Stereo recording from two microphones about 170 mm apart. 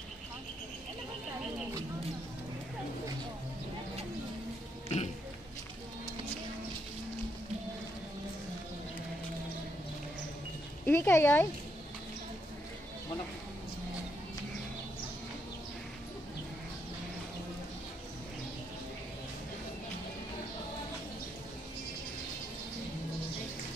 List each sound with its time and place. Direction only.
4.8 s oink: 40° left (ahead or behind)
10.9 s speech: 15° left (ahead or behind)